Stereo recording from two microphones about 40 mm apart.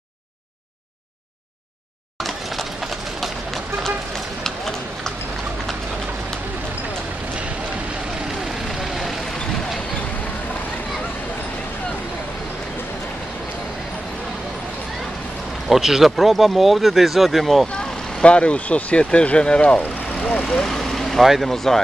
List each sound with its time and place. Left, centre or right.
4.4 s run: centre
15.7 s speech: centre
17.7 s speech: left
20.2 s speech: left
20.5 s vehicle: centre
21.2 s speech: centre